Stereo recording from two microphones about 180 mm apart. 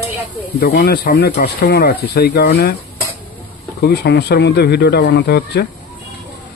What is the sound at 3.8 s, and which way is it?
Speech, 60° left (ahead or behind).